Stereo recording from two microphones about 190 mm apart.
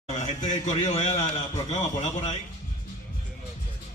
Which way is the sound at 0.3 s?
40° left (ahead or behind).